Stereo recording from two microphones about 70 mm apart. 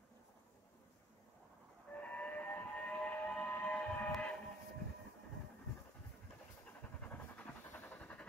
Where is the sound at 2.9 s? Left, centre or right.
Centre.